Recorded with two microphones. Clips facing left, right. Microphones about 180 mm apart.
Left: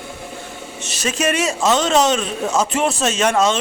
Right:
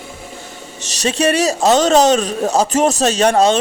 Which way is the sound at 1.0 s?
35° right (ahead or behind).